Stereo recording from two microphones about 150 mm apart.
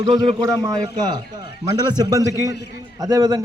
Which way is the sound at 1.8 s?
25° right (ahead or behind).